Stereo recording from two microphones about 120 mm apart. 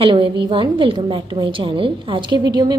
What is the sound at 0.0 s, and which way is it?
A woman's voice, 45° right (ahead or behind).